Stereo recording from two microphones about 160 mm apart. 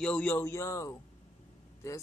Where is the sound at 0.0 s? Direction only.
10° left (ahead or behind).